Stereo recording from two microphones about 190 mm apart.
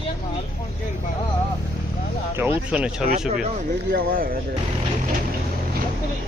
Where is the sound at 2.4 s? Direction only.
10° right (ahead or behind).